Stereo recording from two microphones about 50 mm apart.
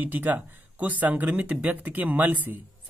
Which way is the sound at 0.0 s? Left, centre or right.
Right.